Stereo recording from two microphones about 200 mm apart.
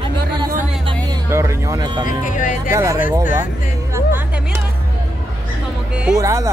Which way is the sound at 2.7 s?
15° right (ahead or behind).